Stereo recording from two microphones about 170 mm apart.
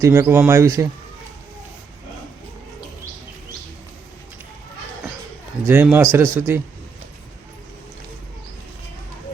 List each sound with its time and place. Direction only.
0.0 s speech: 15° right (ahead or behind)
5.6 s speech: 10° right (ahead or behind)